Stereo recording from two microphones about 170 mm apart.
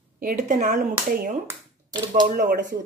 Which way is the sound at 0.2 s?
50° right (ahead or behind).